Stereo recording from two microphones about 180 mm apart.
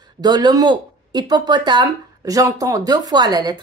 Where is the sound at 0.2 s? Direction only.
25° right (ahead or behind).